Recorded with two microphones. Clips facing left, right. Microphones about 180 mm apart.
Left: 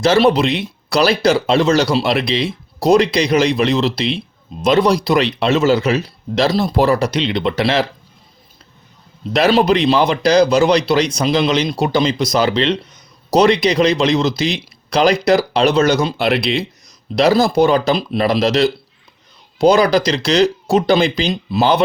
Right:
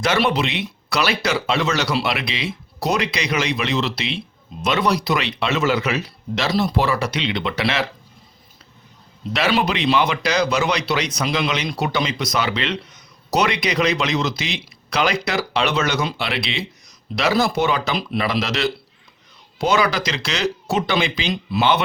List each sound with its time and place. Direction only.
0.0 s speech: 30° left (ahead or behind)
9.3 s speech: 35° left (ahead or behind)